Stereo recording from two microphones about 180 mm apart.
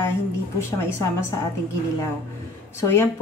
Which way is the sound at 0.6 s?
15° left (ahead or behind).